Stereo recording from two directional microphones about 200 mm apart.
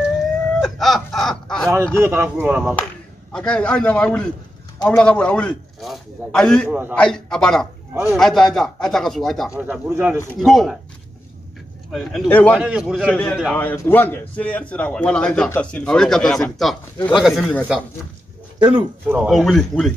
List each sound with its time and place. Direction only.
0.6 s speech: centre (ahead or behind)
2.0 s speech: 10° right (ahead or behind)
3.3 s a man's voice: 5° left (ahead or behind)
6.7 s speech: 10° right (ahead or behind)
7.0 s a man's voice: 5° left (ahead or behind)
7.9 s a man's voice: 10° right (ahead or behind)
8.2 s a man's voice: centre (ahead or behind)
11.9 s a man's voice: centre (ahead or behind)
18.6 s speech: 25° right (ahead or behind)
19.0 s a man's voice: 5° right (ahead or behind)